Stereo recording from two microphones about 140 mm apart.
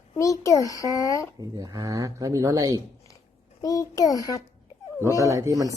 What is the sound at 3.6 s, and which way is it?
Speech, 25° left (ahead or behind).